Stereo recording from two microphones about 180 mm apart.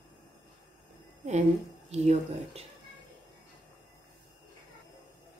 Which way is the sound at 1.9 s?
35° right (ahead or behind).